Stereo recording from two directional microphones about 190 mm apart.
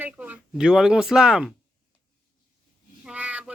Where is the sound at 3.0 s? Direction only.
5° right (ahead or behind).